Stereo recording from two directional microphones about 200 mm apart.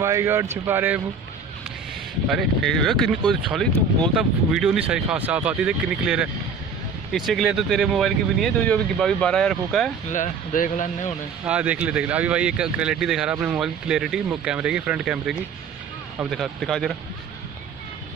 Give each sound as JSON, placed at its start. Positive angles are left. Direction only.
{"t": 0.0, "sound": "speech", "side_deg": -15}
{"t": 2.2, "sound": "speech", "side_deg": 0}
{"t": 10.1, "sound": "speech", "side_deg": 40}
{"t": 11.4, "sound": "speech", "side_deg": -5}